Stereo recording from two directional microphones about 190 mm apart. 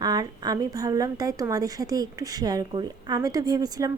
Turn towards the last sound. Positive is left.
turn(degrees=-20)  # may be behind; listen again after turning